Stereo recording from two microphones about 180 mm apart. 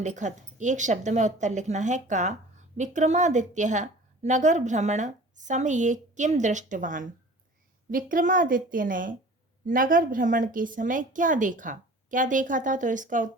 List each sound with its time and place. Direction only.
0.0 s a woman's voice: 40° right (ahead or behind)